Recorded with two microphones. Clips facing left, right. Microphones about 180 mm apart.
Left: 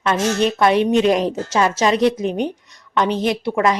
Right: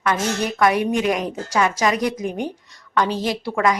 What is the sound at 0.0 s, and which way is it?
A woman's voice, 25° left (ahead or behind).